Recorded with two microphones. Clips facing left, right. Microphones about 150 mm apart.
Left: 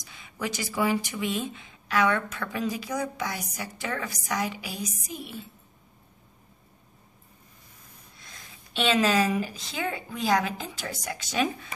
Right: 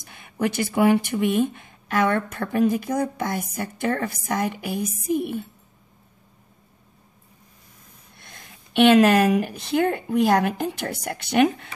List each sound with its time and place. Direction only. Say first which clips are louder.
0.0 s speech: right 8 dB; 55° right (ahead or behind)
8.2 s speech: right 4 dB; 55° right (ahead or behind)